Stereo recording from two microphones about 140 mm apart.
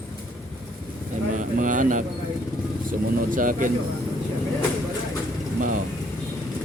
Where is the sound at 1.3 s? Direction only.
65° right (ahead or behind).